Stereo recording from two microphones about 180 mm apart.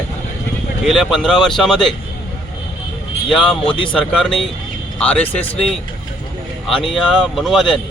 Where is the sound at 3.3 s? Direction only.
5° left (ahead or behind).